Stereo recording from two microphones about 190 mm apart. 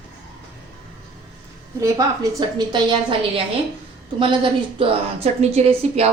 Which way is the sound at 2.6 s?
25° right (ahead or behind).